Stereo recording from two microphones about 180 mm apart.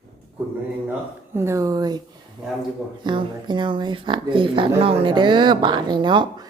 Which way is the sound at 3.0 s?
25° right (ahead or behind).